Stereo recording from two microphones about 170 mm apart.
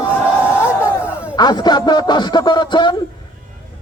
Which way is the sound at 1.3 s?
25° left (ahead or behind).